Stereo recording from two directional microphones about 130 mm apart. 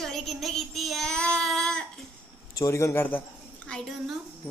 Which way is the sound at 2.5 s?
25° left (ahead or behind).